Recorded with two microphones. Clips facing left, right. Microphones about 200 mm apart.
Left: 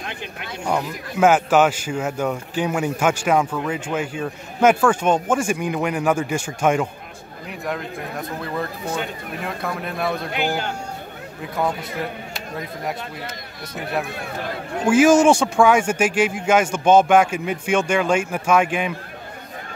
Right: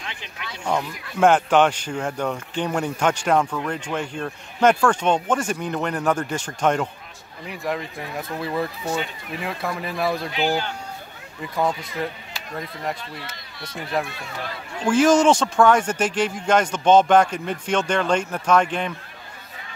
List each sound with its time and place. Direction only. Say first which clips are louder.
0.0 s a sound: left 4 dB; 50° left (ahead or behind)
0.7 s speech: left 1 dB; 5° left (ahead or behind)
10.3 s speech: even; 50° left (ahead or behind)
14.1 s speech: left 5 dB; 55° left (ahead or behind)
14.9 s speech: left 2 dB; 10° left (ahead or behind)